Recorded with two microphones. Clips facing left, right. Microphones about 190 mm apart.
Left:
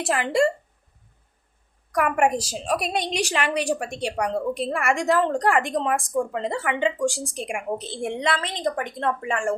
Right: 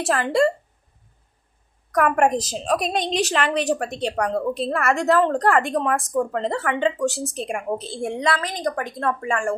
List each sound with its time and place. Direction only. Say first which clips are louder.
0.0 s a woman's voice: right 2 dB; 15° left (ahead or behind)
2.0 s a woman's voice: right 2 dB; 10° left (ahead or behind)